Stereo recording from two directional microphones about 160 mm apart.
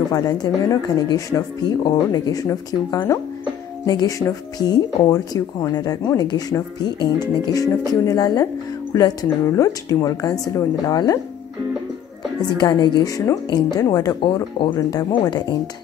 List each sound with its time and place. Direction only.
0.1 s speech: 25° left (ahead or behind)
12.5 s speech: 25° left (ahead or behind)